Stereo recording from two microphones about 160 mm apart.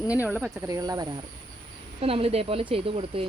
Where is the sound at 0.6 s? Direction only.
20° right (ahead or behind).